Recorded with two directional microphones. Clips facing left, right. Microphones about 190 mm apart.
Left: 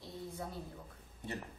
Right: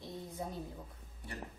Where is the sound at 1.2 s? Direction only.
20° left (ahead or behind).